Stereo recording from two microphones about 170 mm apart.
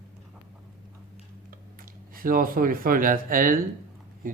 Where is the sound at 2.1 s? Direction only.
55° right (ahead or behind).